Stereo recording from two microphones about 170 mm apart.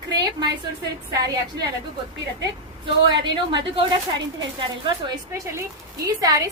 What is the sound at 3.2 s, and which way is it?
Speech, 25° right (ahead or behind).